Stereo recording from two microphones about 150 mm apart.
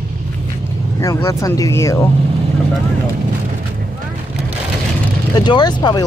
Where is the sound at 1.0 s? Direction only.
20° left (ahead or behind).